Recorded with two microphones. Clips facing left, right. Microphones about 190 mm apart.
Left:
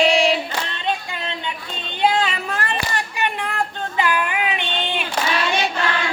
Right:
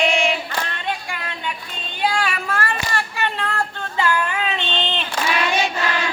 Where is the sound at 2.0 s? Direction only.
20° left (ahead or behind).